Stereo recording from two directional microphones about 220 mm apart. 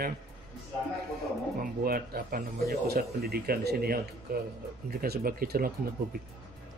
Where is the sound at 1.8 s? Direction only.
40° right (ahead or behind).